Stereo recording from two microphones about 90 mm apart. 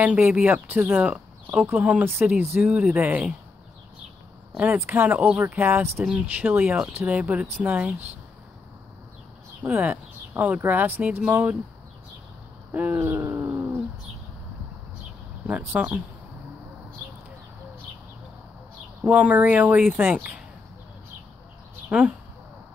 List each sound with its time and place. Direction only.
0.0 s speech: 20° right (ahead or behind)
4.6 s speech: 20° right (ahead or behind)
9.6 s speech: 30° right (ahead or behind)
10.3 s speech: 20° right (ahead or behind)
12.7 s speech: 15° right (ahead or behind)
15.4 s speech: 15° right (ahead or behind)
19.0 s speech: 15° right (ahead or behind)
21.8 s speech: 15° right (ahead or behind)